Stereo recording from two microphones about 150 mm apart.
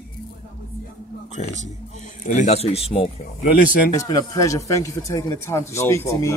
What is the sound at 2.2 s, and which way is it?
Speech, 55° left (ahead or behind).